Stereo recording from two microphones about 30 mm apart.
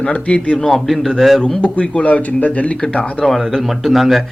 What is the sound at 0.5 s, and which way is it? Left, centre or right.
Speech, centre.